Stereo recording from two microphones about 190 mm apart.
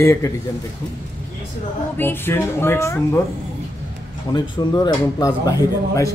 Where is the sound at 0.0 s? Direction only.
15° left (ahead or behind).